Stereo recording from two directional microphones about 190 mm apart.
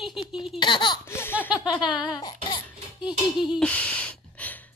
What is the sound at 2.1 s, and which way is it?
Cough, 20° left (ahead or behind).